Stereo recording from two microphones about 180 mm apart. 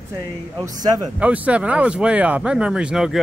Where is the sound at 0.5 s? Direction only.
20° right (ahead or behind).